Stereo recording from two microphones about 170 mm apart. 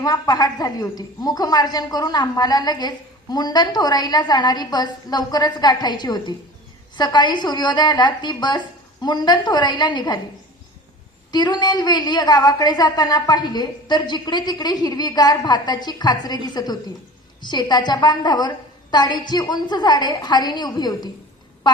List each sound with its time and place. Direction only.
0.0 s a woman's voice: 20° left (ahead or behind)
11.3 s a woman's voice: 25° left (ahead or behind)
17.4 s a woman's voice: 25° left (ahead or behind)